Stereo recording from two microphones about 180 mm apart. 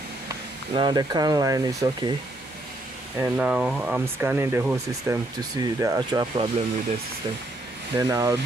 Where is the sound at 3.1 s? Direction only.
10° right (ahead or behind).